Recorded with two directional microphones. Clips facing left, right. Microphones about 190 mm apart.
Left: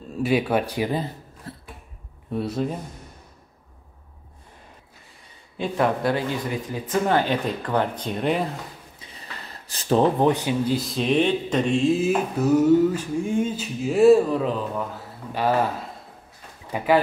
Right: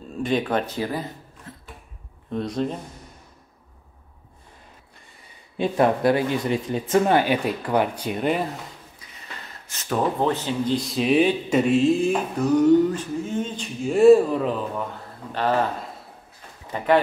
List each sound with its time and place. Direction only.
0.2 s speech: 10° left (ahead or behind)
1.5 s a sound: 35° left (ahead or behind)
2.3 s speech: 5° left (ahead or behind)
5.6 s speech: 20° right (ahead or behind)
7.2 s speech: 10° right (ahead or behind)
9.0 s a sound: 35° left (ahead or behind)
10.2 s speech: 15° left (ahead or behind)
16.7 s speech: 5° left (ahead or behind)